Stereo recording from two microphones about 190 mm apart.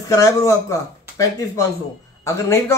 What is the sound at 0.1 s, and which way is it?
A man's voice, 15° left (ahead or behind).